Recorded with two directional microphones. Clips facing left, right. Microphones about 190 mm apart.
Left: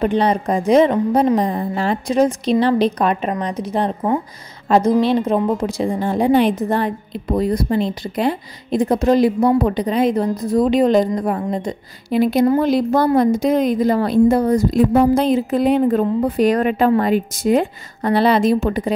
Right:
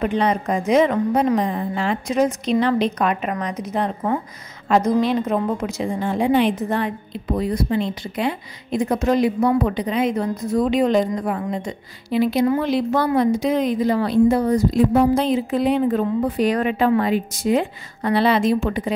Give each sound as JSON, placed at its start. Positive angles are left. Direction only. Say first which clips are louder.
{"t": 0.0, "sound": "a woman's voice", "louder": "left 3 dB", "side_deg": 35}